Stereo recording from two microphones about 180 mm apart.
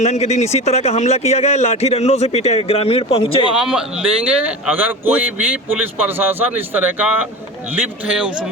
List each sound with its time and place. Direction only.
0.0 s speech: 40° left (ahead or behind)
3.6 s a man's voice: 5° right (ahead or behind)